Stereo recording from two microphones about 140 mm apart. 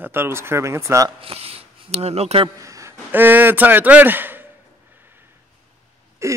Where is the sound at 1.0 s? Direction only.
40° right (ahead or behind).